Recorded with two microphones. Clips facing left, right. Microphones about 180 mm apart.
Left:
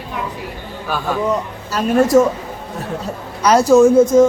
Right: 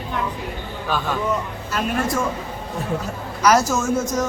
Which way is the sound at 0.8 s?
10° left (ahead or behind).